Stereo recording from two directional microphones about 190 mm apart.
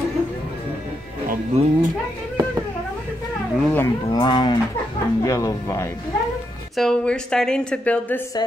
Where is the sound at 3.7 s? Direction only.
15° left (ahead or behind).